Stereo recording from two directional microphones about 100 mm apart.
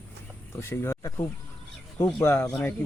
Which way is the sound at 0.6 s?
25° left (ahead or behind).